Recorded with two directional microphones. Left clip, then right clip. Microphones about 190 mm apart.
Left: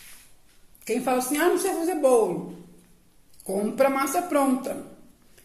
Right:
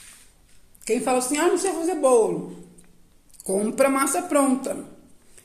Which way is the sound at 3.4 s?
25° right (ahead or behind).